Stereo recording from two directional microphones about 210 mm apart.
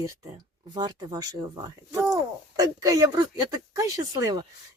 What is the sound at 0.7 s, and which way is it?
A woman's voice, 20° right (ahead or behind).